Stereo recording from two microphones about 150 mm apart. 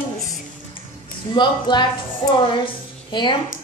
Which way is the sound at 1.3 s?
30° left (ahead or behind).